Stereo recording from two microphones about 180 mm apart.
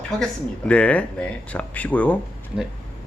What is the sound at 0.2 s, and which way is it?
Speech, 5° left (ahead or behind).